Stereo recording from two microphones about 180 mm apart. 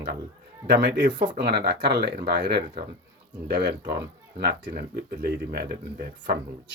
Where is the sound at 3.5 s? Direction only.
65° right (ahead or behind).